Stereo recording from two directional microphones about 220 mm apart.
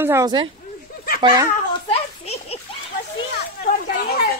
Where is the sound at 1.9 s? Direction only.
30° left (ahead or behind).